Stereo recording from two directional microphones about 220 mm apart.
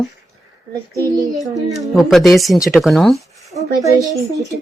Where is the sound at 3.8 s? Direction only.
15° right (ahead or behind).